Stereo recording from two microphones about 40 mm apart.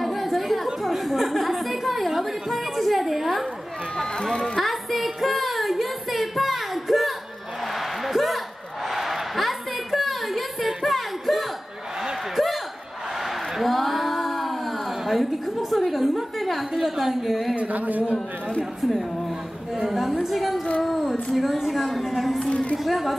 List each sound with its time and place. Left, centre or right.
0.0 s chatter: centre
3.9 s run: centre
4.6 s child singing: centre
7.6 s a sound: centre
10.8 s music: centre
13.2 s a sound: centre
17.6 s speech: right
18.8 s a woman's voice: centre
22.5 s a woman's voice: left
22.8 s a woman's voice: centre